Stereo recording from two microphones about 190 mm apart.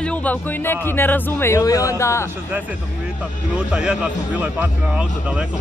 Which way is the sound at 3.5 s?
5° right (ahead or behind).